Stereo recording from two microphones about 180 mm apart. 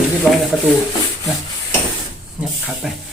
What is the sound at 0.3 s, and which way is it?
Speech, centre (ahead or behind).